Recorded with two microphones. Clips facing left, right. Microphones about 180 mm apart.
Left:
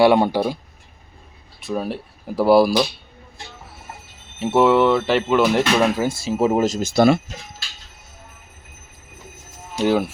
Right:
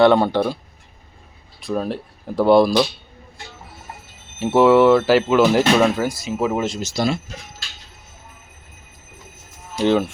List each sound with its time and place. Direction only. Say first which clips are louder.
0.0 s speech: right 1 dB; 10° left (ahead or behind)
1.6 s speech: right 2 dB; 5° left (ahead or behind)
4.4 s speech: right 2 dB; centre (ahead or behind)
6.0 s speech: left 2 dB; 25° left (ahead or behind); by 6.9 s 40° left (ahead or behind)
6.9 s speech: left 7 dB; 60° left (ahead or behind)
9.7 s speech: right 1 dB; 5° left (ahead or behind)